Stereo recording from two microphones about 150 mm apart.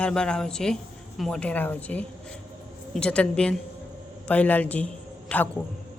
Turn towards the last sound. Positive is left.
turn(degrees=10)  # may be behind; listen again after turning